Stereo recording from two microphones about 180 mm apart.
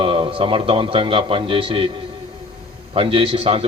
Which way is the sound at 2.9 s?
30° right (ahead or behind).